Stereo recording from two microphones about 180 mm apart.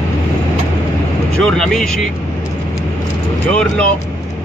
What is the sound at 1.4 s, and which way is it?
Speech, 5° left (ahead or behind).